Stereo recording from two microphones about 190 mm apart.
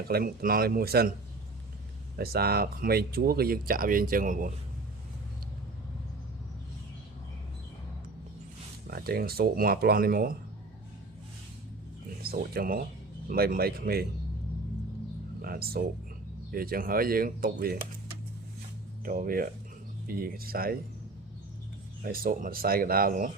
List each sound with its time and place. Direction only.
0.1 s speech: 50° right (ahead or behind)
2.1 s speech: 55° right (ahead or behind)
8.9 s speech: 50° right (ahead or behind)
12.2 s speech: 55° right (ahead or behind)
15.4 s speech: 50° right (ahead or behind)
19.0 s speech: 50° right (ahead or behind)
22.0 s speech: 50° right (ahead or behind)